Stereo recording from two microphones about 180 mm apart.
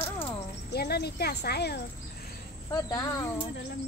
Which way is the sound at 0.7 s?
60° left (ahead or behind).